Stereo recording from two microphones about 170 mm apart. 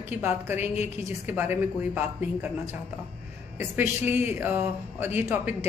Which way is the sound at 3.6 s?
10° right (ahead or behind).